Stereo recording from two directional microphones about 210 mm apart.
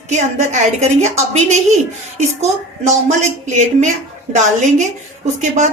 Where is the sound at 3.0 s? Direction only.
35° right (ahead or behind).